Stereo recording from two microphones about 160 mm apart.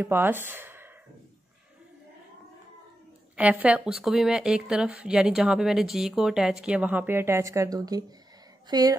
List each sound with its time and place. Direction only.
0.0 s speech: 15° right (ahead or behind)
3.3 s a woman's voice: 10° right (ahead or behind); by 8.9 s 25° right (ahead or behind)